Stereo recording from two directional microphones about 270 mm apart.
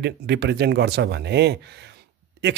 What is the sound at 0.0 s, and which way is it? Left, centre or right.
Speech, right.